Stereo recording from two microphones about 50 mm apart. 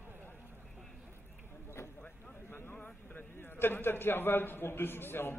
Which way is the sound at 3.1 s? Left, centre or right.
Left.